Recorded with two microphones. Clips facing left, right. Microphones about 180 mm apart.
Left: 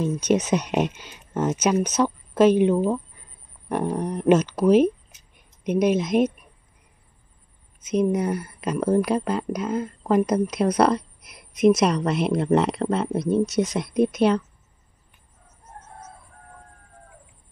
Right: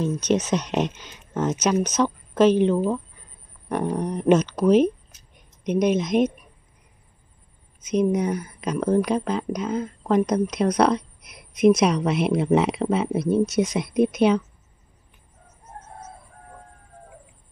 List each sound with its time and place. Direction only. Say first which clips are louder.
0.0 s speech: left 1 dB; 10° left (ahead or behind)
7.9 s speech: even; 5° left (ahead or behind)